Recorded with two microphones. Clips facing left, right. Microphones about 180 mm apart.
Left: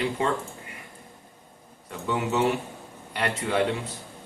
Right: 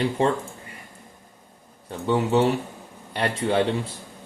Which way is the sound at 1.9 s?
30° right (ahead or behind).